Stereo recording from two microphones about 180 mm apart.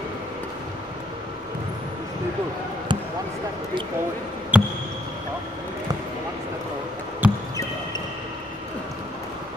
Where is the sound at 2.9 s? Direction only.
25° right (ahead or behind).